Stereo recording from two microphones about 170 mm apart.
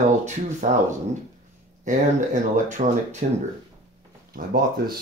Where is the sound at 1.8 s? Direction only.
45° right (ahead or behind).